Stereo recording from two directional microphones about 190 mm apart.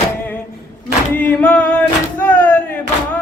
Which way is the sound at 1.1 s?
10° left (ahead or behind).